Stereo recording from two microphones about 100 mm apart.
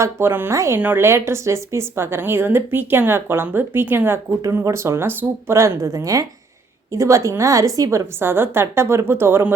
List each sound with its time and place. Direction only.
0.0 s speech: 25° right (ahead or behind)